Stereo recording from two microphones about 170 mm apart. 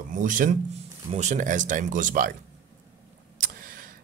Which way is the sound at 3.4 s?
55° right (ahead or behind).